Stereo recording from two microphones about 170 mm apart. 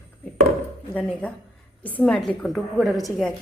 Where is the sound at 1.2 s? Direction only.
10° left (ahead or behind).